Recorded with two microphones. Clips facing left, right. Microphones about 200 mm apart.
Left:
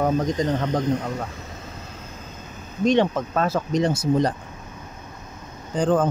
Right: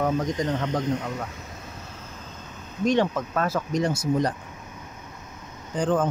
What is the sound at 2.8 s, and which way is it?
Speech, 20° left (ahead or behind).